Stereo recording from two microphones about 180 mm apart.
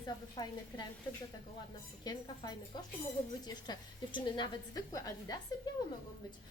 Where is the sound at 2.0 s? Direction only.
20° left (ahead or behind).